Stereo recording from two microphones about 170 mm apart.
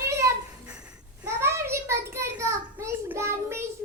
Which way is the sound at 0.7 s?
5° right (ahead or behind).